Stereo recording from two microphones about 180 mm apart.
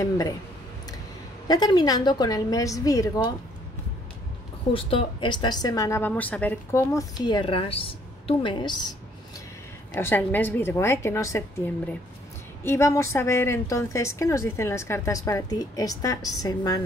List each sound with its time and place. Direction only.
1.5 s a woman's voice: 25° left (ahead or behind)
4.7 s a woman's voice: 30° left (ahead or behind)
9.9 s a woman's voice: 10° left (ahead or behind)